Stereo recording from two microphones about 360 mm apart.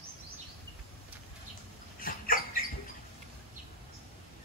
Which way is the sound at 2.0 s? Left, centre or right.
Left.